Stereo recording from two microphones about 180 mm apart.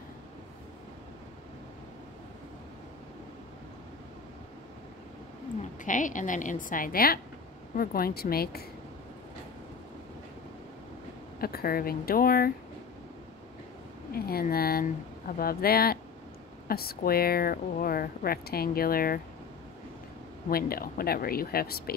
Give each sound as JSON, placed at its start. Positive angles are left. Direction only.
{"t": 5.6, "sound": "a woman's voice", "side_deg": 45}
{"t": 11.3, "sound": "speech", "side_deg": 55}
{"t": 14.1, "sound": "speech", "side_deg": 55}
{"t": 20.4, "sound": "speech", "side_deg": 55}